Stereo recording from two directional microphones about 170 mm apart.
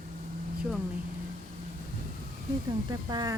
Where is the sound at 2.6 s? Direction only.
25° right (ahead or behind).